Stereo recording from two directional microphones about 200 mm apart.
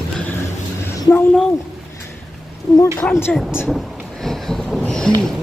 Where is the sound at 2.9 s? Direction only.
10° left (ahead or behind).